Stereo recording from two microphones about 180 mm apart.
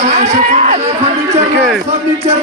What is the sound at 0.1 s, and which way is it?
Speech, 40° right (ahead or behind).